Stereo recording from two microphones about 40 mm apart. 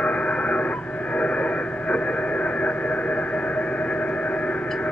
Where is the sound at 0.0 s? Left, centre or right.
Left.